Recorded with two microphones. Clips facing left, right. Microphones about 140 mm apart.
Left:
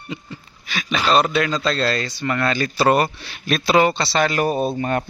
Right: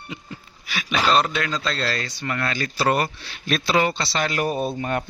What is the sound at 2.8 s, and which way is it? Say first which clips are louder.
Speech: left 4 dB; 90° left.